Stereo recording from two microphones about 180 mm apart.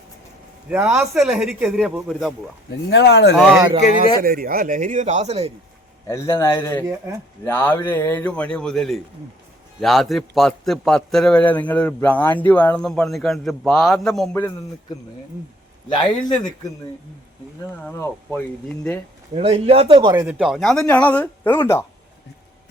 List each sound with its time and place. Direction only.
0.7 s a man's voice: 5° right (ahead or behind)
2.6 s speech: 75° left (ahead or behind)
3.3 s a man's voice: centre (ahead or behind)
4.2 s speech: 50° right (ahead or behind)
6.1 s a man's voice: 15° left (ahead or behind)
15.9 s speech: 25° left (ahead or behind)
17.8 s speech: 10° left (ahead or behind)
19.3 s a man's voice: 35° right (ahead or behind)
20.2 s speech: centre (ahead or behind)